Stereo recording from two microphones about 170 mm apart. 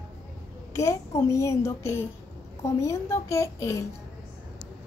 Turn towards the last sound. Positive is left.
turn(degrees=15)  # may be behind; listen again after turning